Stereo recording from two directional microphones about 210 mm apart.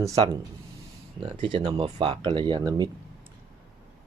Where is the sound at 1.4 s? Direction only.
25° right (ahead or behind).